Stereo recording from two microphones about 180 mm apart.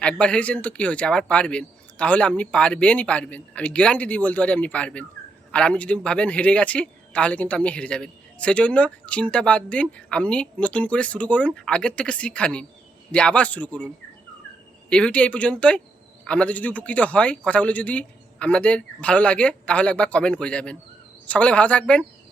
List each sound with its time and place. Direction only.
0.0 s a man's voice: 5° left (ahead or behind)